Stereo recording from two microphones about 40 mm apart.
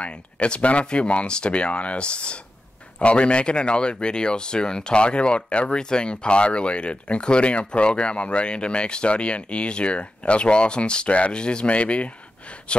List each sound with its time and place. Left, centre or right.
0.0 s speech: left